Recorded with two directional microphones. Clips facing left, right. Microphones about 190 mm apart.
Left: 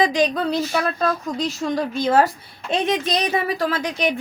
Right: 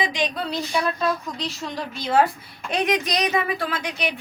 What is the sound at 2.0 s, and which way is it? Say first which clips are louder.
Speech: left 2 dB; 40° left (ahead or behind).